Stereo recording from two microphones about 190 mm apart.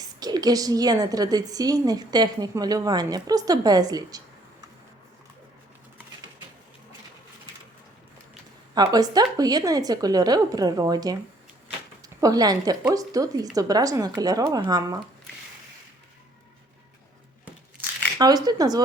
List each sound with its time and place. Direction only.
0.0 s a woman's voice: 20° right (ahead or behind)
8.7 s a woman's voice: 20° right (ahead or behind)
18.4 s a woman's voice: 20° right (ahead or behind)